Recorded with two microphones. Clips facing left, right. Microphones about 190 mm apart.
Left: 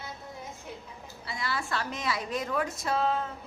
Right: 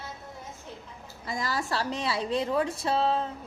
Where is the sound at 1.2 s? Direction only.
45° right (ahead or behind).